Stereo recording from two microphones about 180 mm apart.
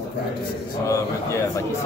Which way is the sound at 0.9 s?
15° left (ahead or behind).